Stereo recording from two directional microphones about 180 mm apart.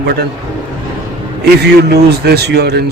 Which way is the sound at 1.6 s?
65° right (ahead or behind).